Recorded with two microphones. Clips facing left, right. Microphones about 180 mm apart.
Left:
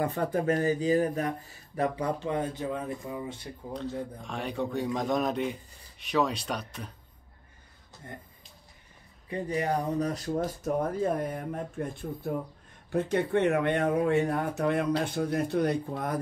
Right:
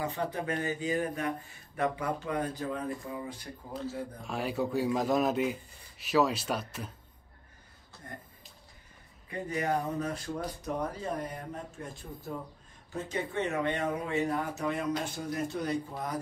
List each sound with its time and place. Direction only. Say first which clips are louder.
0.0 s speech: left 5 dB; 55° left (ahead or behind)
0.4 s speech: left 10 dB; 40° left (ahead or behind); by 3.4 s 20° left (ahead or behind)
3.7 s a man's voice: left 2 dB; 5° right (ahead or behind)
9.3 s speech: left 2 dB; 30° left (ahead or behind); by 16.2 s 55° left (ahead or behind)